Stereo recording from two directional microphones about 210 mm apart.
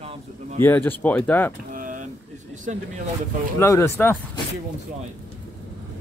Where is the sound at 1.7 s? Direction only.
40° right (ahead or behind).